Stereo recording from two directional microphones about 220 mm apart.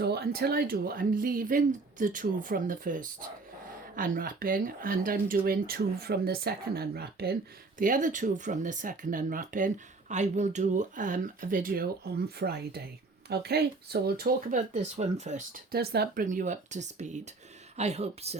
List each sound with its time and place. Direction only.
0.0 s speech: 45° right (ahead or behind); by 18.3 s 30° right (ahead or behind)